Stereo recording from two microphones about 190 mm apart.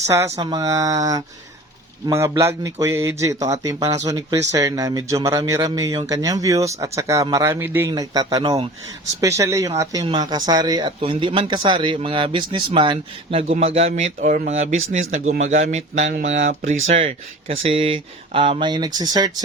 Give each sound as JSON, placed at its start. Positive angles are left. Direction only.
{"t": 0.5, "sound": "speech", "side_deg": -20}
{"t": 9.2, "sound": "speech", "side_deg": -15}